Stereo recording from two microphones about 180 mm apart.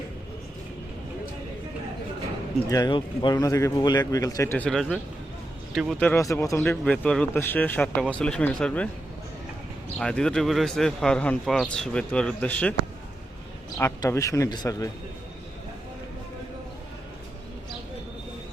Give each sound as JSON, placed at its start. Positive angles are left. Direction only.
{"t": 2.6, "sound": "speech", "side_deg": 20}
{"t": 10.0, "sound": "speech", "side_deg": 5}
{"t": 13.7, "sound": "speech", "side_deg": 15}